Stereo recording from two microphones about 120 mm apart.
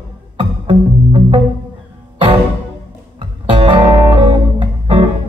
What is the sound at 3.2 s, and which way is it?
Music, 45° right (ahead or behind).